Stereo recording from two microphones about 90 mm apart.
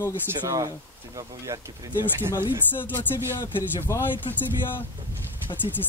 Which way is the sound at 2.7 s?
25° left (ahead or behind).